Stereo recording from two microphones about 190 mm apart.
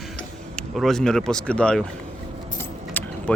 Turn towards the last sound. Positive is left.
turn(degrees=5)  # may be behind; listen again after turning